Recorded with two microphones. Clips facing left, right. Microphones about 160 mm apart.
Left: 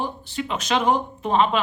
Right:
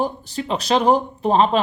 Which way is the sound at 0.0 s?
40° right (ahead or behind).